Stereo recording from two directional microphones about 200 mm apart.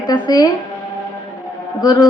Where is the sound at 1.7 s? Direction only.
20° left (ahead or behind).